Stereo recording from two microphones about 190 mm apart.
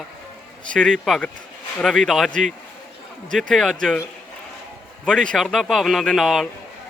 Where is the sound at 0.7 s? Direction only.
5° left (ahead or behind).